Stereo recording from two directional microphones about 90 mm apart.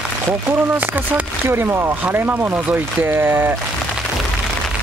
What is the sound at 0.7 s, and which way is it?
Speech, 20° right (ahead or behind).